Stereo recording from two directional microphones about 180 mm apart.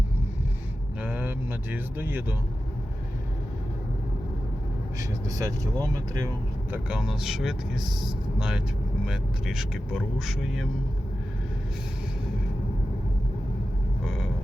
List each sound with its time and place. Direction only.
1.0 s vehicle: 10° right (ahead or behind)
4.9 s speech: 20° right (ahead or behind)
6.7 s speech: 5° right (ahead or behind)
14.0 s vehicle: centre (ahead or behind)